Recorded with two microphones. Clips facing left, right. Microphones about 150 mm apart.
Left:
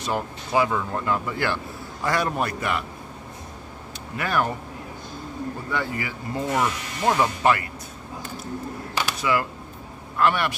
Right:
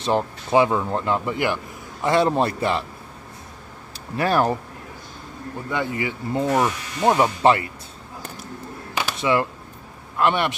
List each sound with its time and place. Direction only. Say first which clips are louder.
0.0 s speech: right 5 dB; 25° right (ahead or behind)
4.2 s speech: right 5 dB; 30° right (ahead or behind)
5.7 s speech: right 5 dB; 20° right (ahead or behind)
8.9 s a sound: right 3 dB; 25° right (ahead or behind)
10.1 s speech: right 1 dB; 20° right (ahead or behind)